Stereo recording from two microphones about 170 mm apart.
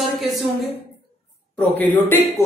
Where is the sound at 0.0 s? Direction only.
Centre (ahead or behind).